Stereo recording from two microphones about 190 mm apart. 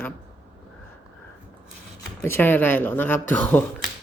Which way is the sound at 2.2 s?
10° left (ahead or behind).